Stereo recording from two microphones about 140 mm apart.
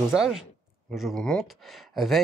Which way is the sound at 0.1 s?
5° right (ahead or behind).